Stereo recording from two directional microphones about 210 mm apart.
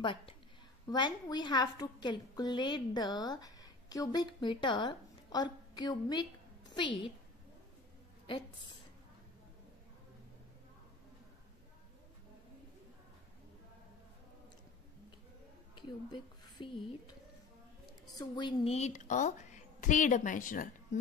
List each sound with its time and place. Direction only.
0.0 s a woman's voice: 25° left (ahead or behind)
15.7 s speech: 20° left (ahead or behind)
18.1 s a woman's voice: 20° left (ahead or behind); by 21.0 s 40° left (ahead or behind)